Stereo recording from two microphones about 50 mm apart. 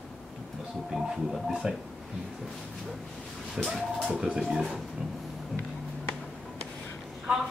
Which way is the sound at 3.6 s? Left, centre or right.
Centre.